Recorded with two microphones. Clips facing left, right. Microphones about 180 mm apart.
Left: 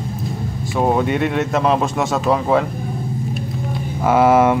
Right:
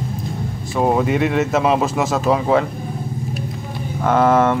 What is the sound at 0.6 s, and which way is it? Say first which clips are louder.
Speech: even; centre (ahead or behind).